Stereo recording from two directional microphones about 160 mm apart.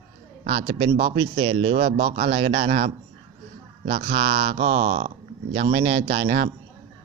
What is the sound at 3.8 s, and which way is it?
Speech, 70° right (ahead or behind).